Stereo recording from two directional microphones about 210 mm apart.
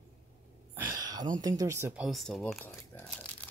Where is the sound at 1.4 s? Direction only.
15° right (ahead or behind).